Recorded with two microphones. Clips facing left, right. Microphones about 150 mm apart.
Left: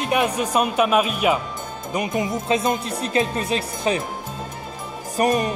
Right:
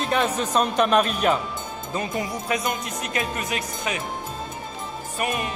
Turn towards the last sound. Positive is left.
turn(degrees=40)  # may be behind; listen again after turning